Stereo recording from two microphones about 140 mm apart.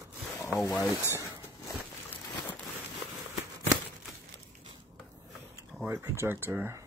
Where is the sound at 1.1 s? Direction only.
20° right (ahead or behind).